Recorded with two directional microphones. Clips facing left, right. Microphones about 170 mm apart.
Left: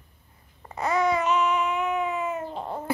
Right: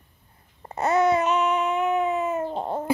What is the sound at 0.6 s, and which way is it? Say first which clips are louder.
Babbling: right 4 dB; 30° right (ahead or behind).